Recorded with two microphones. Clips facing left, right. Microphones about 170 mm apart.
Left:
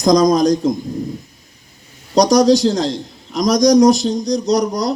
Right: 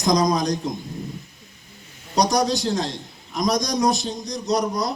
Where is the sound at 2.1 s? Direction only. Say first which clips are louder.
Left 9 dB; 90° left.